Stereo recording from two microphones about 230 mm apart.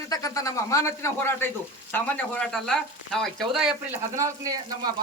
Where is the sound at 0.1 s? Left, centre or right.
Centre.